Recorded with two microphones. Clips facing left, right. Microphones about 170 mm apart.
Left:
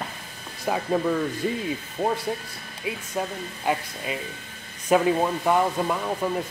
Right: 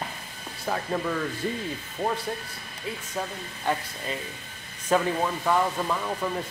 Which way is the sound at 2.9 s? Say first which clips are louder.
Left 4 dB; 10° left (ahead or behind).